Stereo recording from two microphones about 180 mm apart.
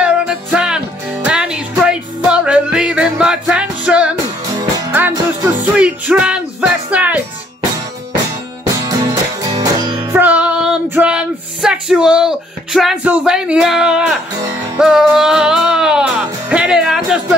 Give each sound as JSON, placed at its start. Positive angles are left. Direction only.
{"t": 0.0, "sound": "music", "side_deg": -5}
{"t": 5.5, "sound": "music", "side_deg": -5}
{"t": 8.8, "sound": "music", "side_deg": -20}
{"t": 10.1, "sound": "female singing", "side_deg": -10}
{"t": 14.8, "sound": "music", "side_deg": 0}